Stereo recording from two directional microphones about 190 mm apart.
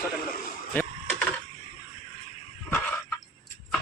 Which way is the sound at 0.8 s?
10° left (ahead or behind).